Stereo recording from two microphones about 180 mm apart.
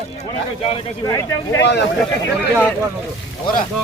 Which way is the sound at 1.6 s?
75° left (ahead or behind).